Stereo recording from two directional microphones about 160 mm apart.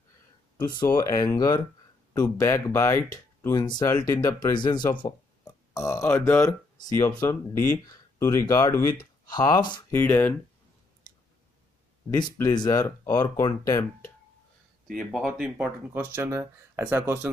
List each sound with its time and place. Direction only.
0.8 s speech: 20° left (ahead or behind)
9.9 s speech: 10° left (ahead or behind)
12.1 s speech: 25° left (ahead or behind)
14.9 s speech: centre (ahead or behind)